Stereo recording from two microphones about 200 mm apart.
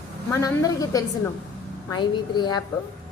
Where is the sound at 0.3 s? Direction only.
15° left (ahead or behind).